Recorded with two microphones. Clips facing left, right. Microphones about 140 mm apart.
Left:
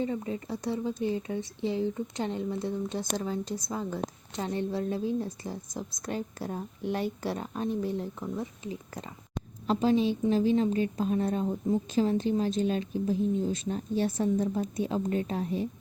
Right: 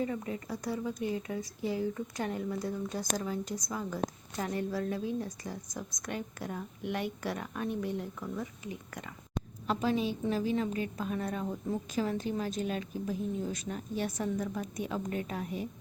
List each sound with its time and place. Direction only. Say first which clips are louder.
0.0 s speech: left 3 dB; 25° left (ahead or behind)